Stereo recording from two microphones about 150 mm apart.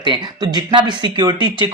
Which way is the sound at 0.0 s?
30° right (ahead or behind).